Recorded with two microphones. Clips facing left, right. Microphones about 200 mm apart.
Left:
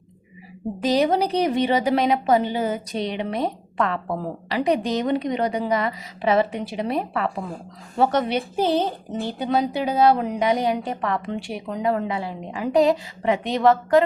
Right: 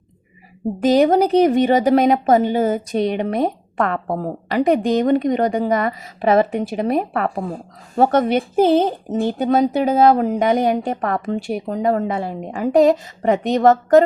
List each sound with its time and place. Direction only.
0.8 s a woman's voice: 50° right (ahead or behind)